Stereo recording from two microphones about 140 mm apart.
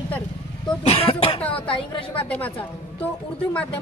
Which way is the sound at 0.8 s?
45° left (ahead or behind).